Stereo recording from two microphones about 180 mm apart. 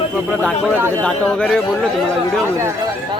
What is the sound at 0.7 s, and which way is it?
Speech, 10° right (ahead or behind).